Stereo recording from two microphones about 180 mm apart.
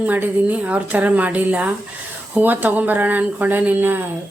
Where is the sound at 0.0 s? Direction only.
10° right (ahead or behind).